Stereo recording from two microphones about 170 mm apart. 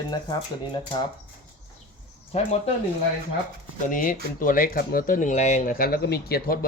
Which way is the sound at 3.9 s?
50° left (ahead or behind).